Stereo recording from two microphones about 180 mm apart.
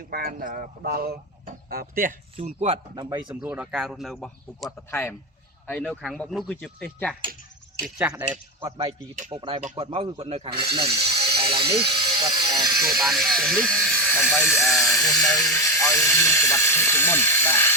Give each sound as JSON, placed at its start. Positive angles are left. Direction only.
{"t": 0.1, "sound": "speech", "side_deg": -55}
{"t": 2.3, "sound": "speech", "side_deg": -35}
{"t": 3.4, "sound": "speech", "side_deg": -5}
{"t": 4.9, "sound": "speech", "side_deg": 10}
{"t": 7.9, "sound": "speech", "side_deg": -5}
{"t": 9.3, "sound": "a man's voice", "side_deg": -30}
{"t": 10.9, "sound": "music", "side_deg": -35}
{"t": 11.7, "sound": "a sound", "side_deg": -20}
{"t": 12.9, "sound": "electric shaver", "side_deg": 0}